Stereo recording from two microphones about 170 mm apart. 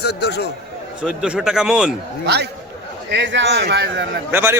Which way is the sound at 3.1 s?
90° right.